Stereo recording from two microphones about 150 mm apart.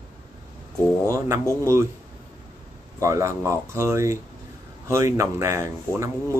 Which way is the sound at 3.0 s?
20° right (ahead or behind).